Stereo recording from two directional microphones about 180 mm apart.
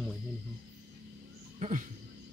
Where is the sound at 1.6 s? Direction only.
45° right (ahead or behind).